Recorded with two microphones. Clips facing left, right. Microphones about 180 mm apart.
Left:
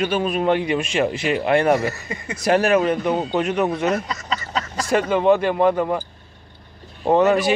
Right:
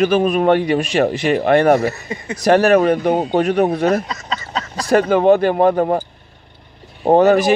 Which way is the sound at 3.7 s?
35° right (ahead or behind).